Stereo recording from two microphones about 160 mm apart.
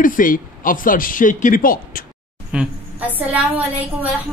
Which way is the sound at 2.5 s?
5° right (ahead or behind).